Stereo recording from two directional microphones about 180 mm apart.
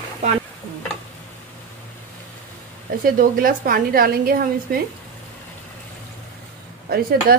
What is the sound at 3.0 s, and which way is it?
A woman's voice, 50° right (ahead or behind).